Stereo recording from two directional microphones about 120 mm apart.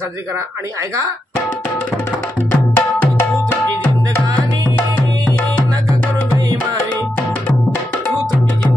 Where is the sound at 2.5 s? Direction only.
15° left (ahead or behind).